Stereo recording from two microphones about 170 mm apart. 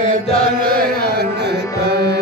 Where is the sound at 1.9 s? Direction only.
75° right (ahead or behind).